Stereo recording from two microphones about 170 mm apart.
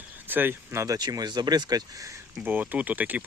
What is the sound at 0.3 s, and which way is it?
Speech, 10° right (ahead or behind).